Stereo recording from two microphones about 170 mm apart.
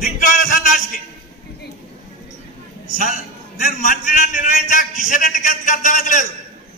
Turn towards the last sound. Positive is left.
turn(degrees=50)  # may be behind; listen again after turning